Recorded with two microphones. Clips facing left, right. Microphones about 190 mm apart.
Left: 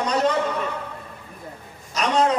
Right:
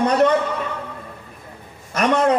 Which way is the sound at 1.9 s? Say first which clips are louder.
Right 3 dB; 55° right (ahead or behind).